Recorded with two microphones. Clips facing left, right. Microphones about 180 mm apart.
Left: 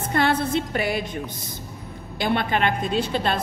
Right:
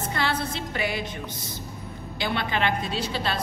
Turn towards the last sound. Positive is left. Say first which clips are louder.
# left 5 dB
turn(degrees=50)  # may be behind; listen again after turning